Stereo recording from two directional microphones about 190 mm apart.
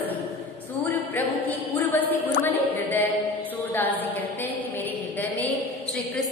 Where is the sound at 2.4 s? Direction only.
10° left (ahead or behind).